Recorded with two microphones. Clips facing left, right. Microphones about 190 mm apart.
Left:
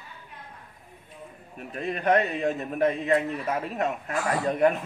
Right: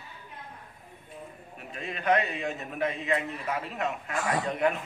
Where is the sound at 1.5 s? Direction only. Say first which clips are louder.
Left 7 dB; 50° left (ahead or behind).